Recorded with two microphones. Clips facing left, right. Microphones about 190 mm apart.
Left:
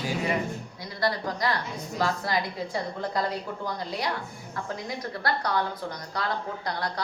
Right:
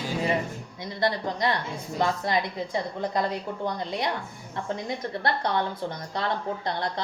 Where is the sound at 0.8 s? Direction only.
20° right (ahead or behind).